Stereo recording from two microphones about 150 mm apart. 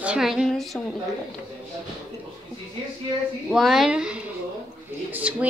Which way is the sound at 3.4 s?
Centre (ahead or behind).